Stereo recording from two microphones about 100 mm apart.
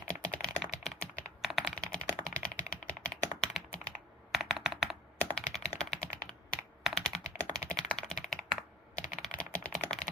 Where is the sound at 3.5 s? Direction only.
10° left (ahead or behind).